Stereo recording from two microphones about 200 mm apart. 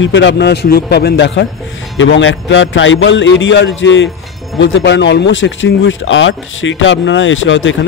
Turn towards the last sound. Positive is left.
turn(degrees=70)  # may be behind; listen again after turning